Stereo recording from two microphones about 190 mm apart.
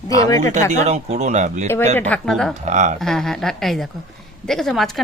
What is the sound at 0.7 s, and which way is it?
Speech, 40° right (ahead or behind).